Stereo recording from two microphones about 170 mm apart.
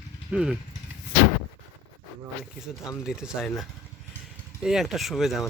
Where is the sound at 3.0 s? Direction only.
5° right (ahead or behind).